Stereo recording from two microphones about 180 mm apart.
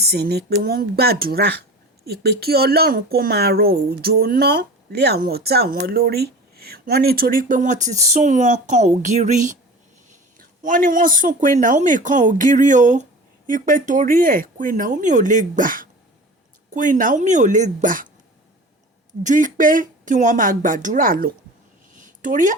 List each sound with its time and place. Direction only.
0.0 s speech: 65° right (ahead or behind)
19.2 s speech: 45° right (ahead or behind)
21.9 s a sound: 45° right (ahead or behind)